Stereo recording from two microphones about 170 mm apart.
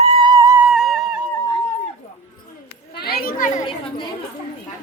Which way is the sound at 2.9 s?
65° left (ahead or behind).